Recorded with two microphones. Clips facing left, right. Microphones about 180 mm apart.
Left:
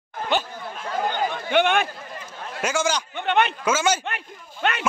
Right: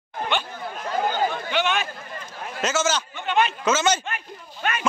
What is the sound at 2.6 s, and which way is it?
Speech, 15° left (ahead or behind).